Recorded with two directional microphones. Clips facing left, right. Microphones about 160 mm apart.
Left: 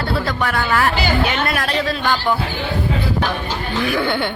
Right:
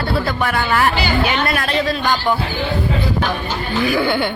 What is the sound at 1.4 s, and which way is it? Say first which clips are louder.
Speech: right 1 dB; centre (ahead or behind).